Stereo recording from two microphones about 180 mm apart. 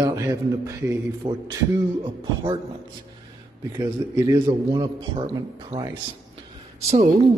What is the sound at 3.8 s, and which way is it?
A man's voice, 20° right (ahead or behind).